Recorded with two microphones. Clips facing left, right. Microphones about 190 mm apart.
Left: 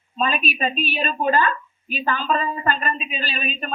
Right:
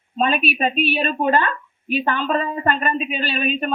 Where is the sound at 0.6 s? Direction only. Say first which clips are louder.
Right 4 dB; 65° right (ahead or behind).